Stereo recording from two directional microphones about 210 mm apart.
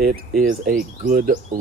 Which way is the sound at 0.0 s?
45° right (ahead or behind).